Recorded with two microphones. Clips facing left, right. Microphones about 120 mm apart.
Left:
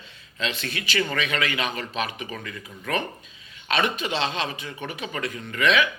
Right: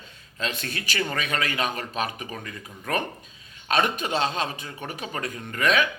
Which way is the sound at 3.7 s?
45° right (ahead or behind).